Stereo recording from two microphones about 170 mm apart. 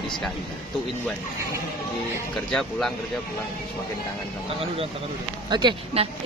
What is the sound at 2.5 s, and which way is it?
Speech, 5° left (ahead or behind).